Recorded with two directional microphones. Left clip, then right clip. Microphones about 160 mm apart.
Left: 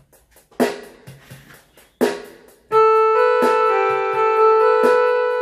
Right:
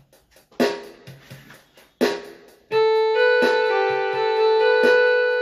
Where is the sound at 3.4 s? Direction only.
30° right (ahead or behind).